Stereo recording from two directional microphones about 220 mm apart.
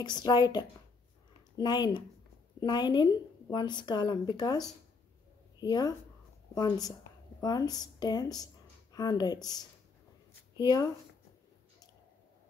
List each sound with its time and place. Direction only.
0.0 s a woman's voice: 20° left (ahead or behind)